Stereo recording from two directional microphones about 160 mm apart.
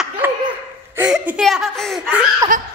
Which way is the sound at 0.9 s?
10° right (ahead or behind).